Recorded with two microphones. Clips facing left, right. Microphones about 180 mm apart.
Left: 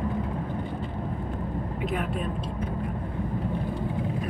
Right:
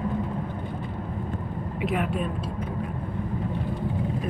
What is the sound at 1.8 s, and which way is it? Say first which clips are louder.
Speech: right 4 dB; 5° right (ahead or behind).